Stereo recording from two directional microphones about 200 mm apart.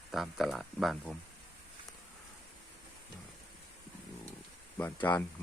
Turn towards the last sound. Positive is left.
turn(degrees=10)  # may be behind; listen again after turning